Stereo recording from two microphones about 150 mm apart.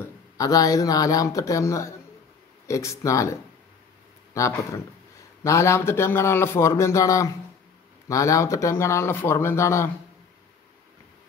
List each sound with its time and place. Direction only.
0.0 s a man's voice: 25° left (ahead or behind)